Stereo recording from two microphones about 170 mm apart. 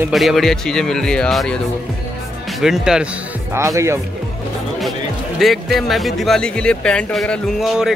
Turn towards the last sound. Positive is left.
turn(degrees=0)  # may be behind; listen again after turning